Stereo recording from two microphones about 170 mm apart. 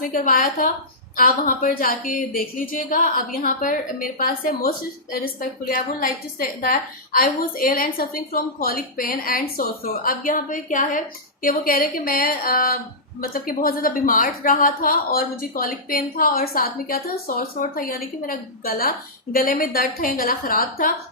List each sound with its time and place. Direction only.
0.0 s a woman's voice: 55° left (ahead or behind)